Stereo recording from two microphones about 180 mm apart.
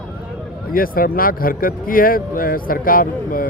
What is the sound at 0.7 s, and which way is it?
Speech, 55° left (ahead or behind).